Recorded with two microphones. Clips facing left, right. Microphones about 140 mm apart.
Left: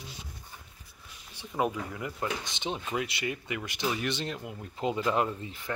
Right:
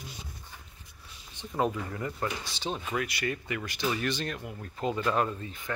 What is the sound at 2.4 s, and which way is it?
Speech, 20° left (ahead or behind).